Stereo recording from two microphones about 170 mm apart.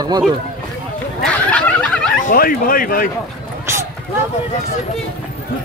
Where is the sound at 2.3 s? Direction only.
55° left (ahead or behind).